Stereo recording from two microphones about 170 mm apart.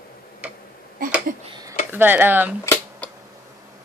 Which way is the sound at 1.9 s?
10° right (ahead or behind).